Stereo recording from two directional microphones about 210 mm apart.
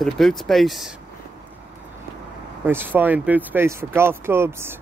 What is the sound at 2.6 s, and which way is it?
Speech, 10° right (ahead or behind).